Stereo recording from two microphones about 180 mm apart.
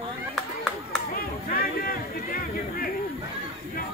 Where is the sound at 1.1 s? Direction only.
55° left (ahead or behind).